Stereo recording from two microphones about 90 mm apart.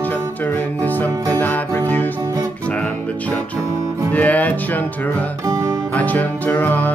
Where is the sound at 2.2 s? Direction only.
45° right (ahead or behind).